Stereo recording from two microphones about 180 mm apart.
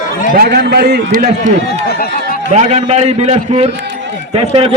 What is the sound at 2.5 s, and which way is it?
A man's voice, 40° right (ahead or behind).